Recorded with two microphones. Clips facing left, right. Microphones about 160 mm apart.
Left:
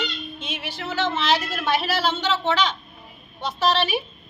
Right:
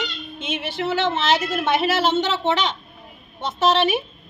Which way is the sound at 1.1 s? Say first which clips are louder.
Right 2 dB; 25° right (ahead or behind).